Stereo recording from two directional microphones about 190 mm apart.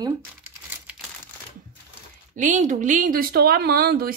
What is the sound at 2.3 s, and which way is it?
Speech, 40° right (ahead or behind).